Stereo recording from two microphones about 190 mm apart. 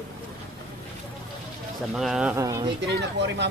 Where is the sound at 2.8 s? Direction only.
65° right (ahead or behind).